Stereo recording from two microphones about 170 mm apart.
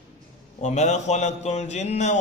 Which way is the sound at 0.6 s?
45° left (ahead or behind).